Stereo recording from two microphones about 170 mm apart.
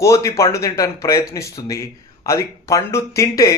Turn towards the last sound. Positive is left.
turn(degrees=20)  # may be behind; listen again after turning